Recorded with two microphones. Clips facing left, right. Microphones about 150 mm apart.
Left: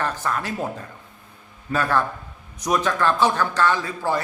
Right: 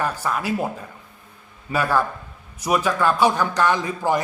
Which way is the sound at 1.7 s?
10° right (ahead or behind).